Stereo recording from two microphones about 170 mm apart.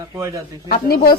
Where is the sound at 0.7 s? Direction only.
60° left (ahead or behind).